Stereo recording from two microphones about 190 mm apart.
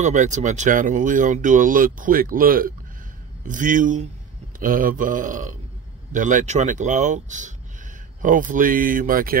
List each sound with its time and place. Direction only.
0.0 s speech: 40° right (ahead or behind)